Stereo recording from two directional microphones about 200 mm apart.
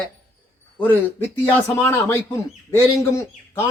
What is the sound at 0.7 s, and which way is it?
Speech, 10° left (ahead or behind).